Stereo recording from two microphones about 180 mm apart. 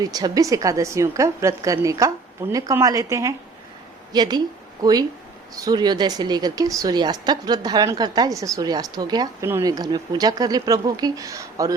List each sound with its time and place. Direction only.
0.0 s a woman's voice: 20° right (ahead or behind)